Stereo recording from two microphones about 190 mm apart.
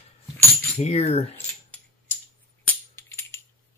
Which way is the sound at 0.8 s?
35° left (ahead or behind).